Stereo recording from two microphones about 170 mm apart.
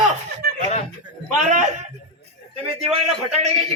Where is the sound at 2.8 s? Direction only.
40° right (ahead or behind).